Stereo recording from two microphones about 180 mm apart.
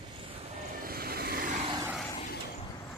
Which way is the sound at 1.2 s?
55° right (ahead or behind).